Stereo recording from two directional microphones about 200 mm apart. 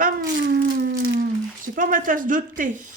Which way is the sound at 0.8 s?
55° right (ahead or behind).